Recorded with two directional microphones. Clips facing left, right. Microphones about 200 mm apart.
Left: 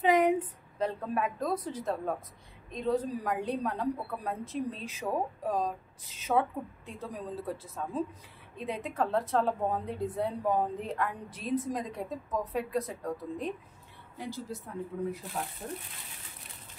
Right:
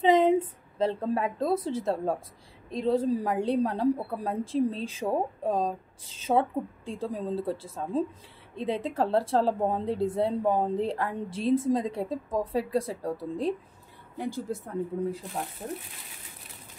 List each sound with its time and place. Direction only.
0.0 s a sound: 25° right (ahead or behind)
0.7 s a woman's voice: 30° right (ahead or behind)
14.5 s speech: 55° right (ahead or behind)